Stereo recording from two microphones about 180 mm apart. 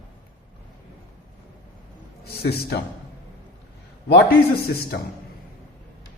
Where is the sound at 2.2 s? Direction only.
60° left (ahead or behind).